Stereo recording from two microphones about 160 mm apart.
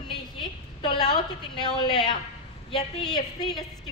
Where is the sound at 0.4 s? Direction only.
25° left (ahead or behind).